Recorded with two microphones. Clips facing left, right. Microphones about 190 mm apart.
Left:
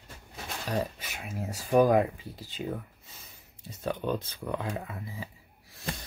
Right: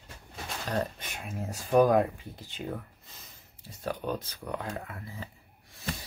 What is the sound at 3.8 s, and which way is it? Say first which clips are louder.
Speech: left 2 dB; 25° left (ahead or behind).